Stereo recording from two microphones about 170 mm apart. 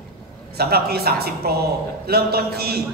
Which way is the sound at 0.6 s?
65° right (ahead or behind).